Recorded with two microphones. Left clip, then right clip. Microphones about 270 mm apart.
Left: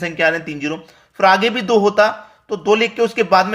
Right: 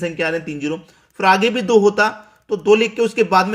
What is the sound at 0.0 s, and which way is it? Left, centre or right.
Speech, centre.